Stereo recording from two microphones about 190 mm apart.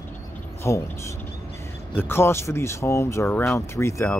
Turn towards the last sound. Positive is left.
turn(degrees=15)  # may be behind; listen again after turning